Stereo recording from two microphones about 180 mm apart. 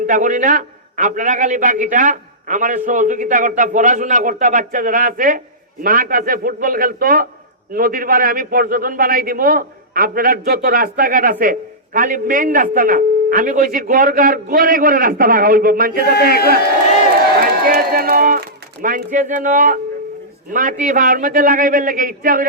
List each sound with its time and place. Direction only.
0.1 s a man's voice: 45° right (ahead or behind)
16.1 s speech: 60° left (ahead or behind)
17.4 s a man's voice: 55° right (ahead or behind)